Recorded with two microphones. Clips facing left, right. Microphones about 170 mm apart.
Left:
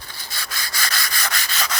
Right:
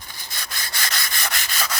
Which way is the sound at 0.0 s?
20° right (ahead or behind).